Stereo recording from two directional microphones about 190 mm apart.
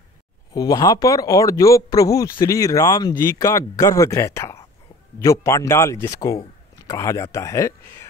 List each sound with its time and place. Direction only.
0.5 s speech: 20° left (ahead or behind)